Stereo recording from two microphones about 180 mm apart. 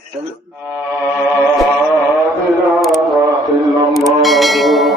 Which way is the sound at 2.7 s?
Centre (ahead or behind).